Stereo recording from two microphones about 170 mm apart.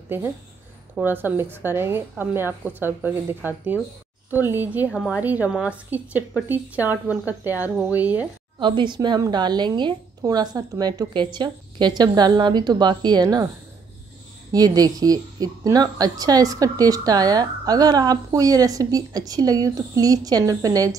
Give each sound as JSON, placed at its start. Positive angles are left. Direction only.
{"t": 0.9, "sound": "a woman's voice", "side_deg": -10}
{"t": 8.5, "sound": "a woman's voice", "side_deg": -30}
{"t": 14.5, "sound": "a woman's voice", "side_deg": -20}